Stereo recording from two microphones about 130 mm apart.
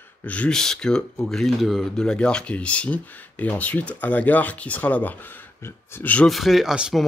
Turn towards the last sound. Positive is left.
turn(degrees=-5)  # may be behind; listen again after turning